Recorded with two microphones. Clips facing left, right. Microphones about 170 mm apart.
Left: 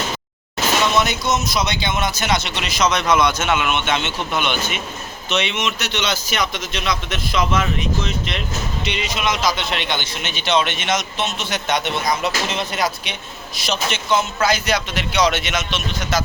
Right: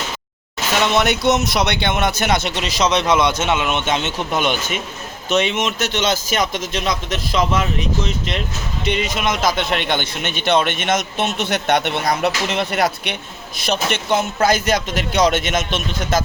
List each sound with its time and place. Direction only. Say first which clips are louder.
0.9 s speech: right 3 dB; 65° right (ahead or behind)
2.6 s a man's voice: right 2 dB; 35° right (ahead or behind)
8.8 s a man's voice: right 5 dB; 50° right (ahead or behind)